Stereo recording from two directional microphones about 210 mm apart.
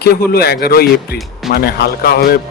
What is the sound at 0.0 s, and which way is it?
Speech, 50° left (ahead or behind).